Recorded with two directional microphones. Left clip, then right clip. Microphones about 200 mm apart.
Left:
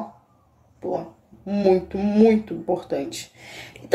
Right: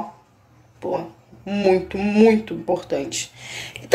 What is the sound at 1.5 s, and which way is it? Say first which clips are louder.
Speech: right 1 dB; 15° left (ahead or behind).